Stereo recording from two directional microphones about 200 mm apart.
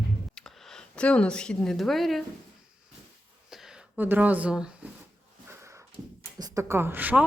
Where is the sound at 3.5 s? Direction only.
Centre (ahead or behind).